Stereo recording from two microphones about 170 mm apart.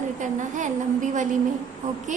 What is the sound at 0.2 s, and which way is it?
A woman's voice, 45° right (ahead or behind).